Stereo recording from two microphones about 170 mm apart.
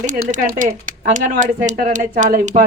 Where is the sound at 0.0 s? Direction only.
50° right (ahead or behind).